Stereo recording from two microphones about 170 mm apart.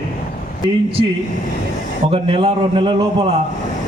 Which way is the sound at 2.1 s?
35° right (ahead or behind).